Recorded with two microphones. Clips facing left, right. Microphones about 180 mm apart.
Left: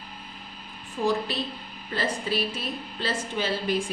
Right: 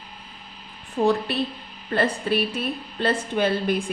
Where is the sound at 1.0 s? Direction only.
50° right (ahead or behind).